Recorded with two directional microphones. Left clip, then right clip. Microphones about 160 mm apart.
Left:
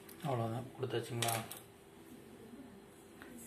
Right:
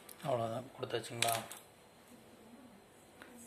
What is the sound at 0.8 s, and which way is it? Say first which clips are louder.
Speech: left 2 dB; 40° right (ahead or behind).